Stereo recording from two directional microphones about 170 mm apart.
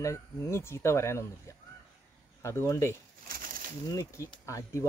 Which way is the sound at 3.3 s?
55° right (ahead or behind).